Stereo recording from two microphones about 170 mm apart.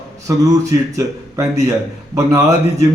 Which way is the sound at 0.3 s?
20° right (ahead or behind).